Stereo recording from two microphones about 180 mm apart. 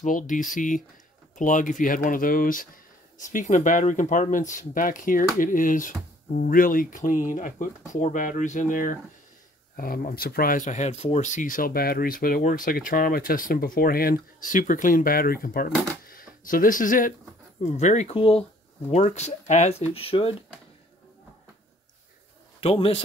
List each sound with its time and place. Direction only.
0.0 s speech: 45° left (ahead or behind)
22.6 s speech: 35° left (ahead or behind)